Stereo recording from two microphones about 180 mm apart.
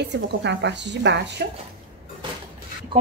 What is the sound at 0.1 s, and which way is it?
A woman's voice, 75° right (ahead or behind).